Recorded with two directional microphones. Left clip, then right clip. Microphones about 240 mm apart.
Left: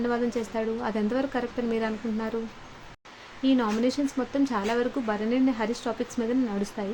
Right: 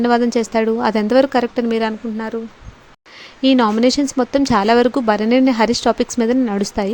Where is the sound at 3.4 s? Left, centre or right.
Right.